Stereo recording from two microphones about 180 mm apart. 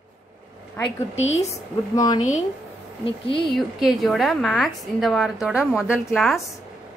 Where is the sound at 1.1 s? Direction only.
40° left (ahead or behind).